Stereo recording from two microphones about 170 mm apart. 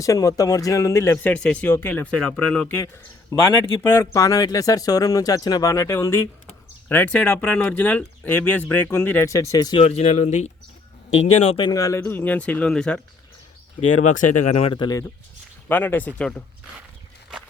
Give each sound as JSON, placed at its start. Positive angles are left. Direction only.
{"t": 0.0, "sound": "speech", "side_deg": 20}
{"t": 9.8, "sound": "speech", "side_deg": 40}
{"t": 11.4, "sound": "speech", "side_deg": 30}
{"t": 13.8, "sound": "speech", "side_deg": 45}
{"t": 14.7, "sound": "speech", "side_deg": 25}
{"t": 15.7, "sound": "speech", "side_deg": 10}